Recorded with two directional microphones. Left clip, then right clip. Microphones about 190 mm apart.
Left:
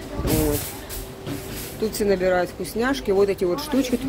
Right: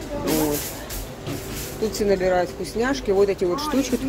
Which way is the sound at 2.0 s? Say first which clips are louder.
Even; 10° left (ahead or behind).